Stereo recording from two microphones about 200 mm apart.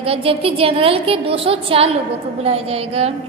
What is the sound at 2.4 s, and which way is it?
Speech, 30° right (ahead or behind).